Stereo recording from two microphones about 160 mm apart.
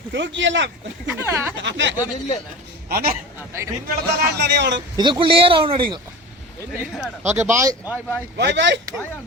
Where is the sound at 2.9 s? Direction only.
65° right (ahead or behind).